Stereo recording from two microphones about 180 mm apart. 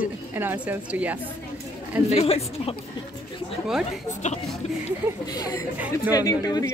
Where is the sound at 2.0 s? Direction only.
35° left (ahead or behind).